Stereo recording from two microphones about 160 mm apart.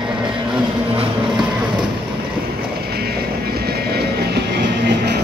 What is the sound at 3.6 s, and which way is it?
Vehicle, 85° right.